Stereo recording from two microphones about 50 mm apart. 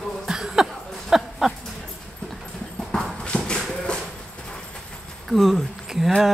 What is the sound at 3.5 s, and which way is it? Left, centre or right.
Shuffle, centre.